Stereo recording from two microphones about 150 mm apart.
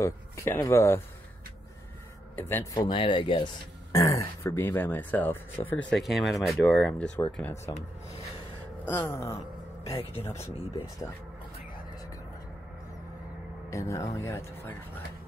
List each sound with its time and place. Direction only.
0.0 s speech: 20° left (ahead or behind)
2.3 s speech: 15° left (ahead or behind)
2.9 s speech: 35° left (ahead or behind)
3.9 s speech: 20° left (ahead or behind)
6.0 s speech: centre (ahead or behind)
8.8 s speech: 15° left (ahead or behind)
9.9 s speech: 40° left (ahead or behind)
10.2 s speech: 15° left (ahead or behind)
13.7 s speech: 20° left (ahead or behind)